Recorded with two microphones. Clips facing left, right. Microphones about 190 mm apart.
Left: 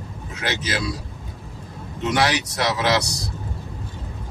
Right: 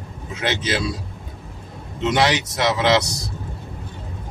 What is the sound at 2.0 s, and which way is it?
Speech, 25° right (ahead or behind).